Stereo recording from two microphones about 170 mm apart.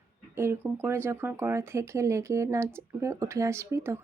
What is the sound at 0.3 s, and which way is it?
Speech, 15° right (ahead or behind).